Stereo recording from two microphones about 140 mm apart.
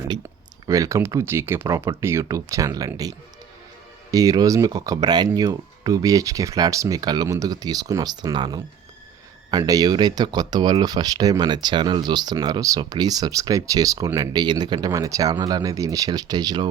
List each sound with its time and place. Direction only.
0.7 s speech: 20° right (ahead or behind)